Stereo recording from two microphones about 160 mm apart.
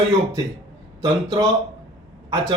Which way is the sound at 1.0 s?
25° right (ahead or behind).